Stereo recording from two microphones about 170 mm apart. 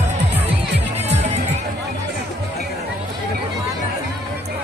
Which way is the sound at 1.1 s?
40° right (ahead or behind).